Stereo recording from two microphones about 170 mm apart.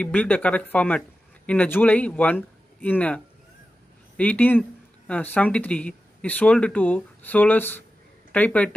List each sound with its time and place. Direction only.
0.0 s speech: 10° left (ahead or behind)
4.2 s speech: 10° left (ahead or behind)